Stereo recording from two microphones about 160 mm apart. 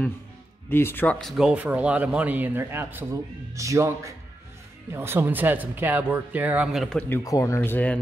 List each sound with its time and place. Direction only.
0.7 s speech: 15° left (ahead or behind)
1.2 s a man's voice: 5° right (ahead or behind)
7.2 s speech: 20° left (ahead or behind)